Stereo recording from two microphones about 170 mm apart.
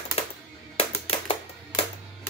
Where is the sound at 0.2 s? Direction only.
35° left (ahead or behind).